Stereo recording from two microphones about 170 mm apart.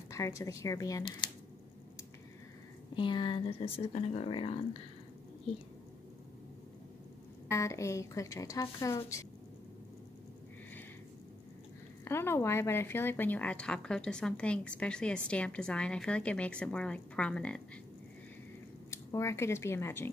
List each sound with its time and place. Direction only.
0.1 s speech: 20° left (ahead or behind)
2.9 s speech: 30° left (ahead or behind)
7.4 s speech: 15° left (ahead or behind)
12.0 s speech: 15° left (ahead or behind)
18.9 s speech: 15° left (ahead or behind)